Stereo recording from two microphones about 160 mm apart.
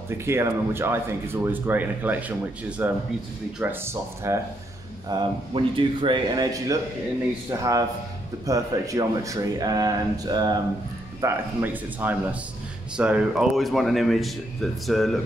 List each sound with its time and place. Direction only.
0.2 s speech: 15° right (ahead or behind)
5.0 s speech: 30° right (ahead or behind)
11.1 s a man's voice: 15° right (ahead or behind); by 15.1 s centre (ahead or behind)